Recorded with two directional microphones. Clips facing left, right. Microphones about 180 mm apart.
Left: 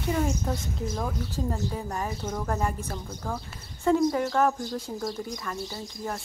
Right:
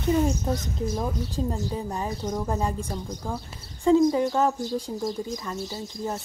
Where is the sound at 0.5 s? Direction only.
15° right (ahead or behind).